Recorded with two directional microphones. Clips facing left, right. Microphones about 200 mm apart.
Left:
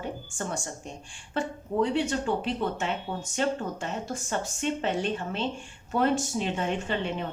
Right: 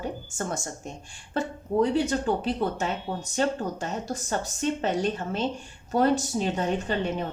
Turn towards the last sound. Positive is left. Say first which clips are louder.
# right 2 dB
turn(degrees=-40)  # may be behind; listen again after turning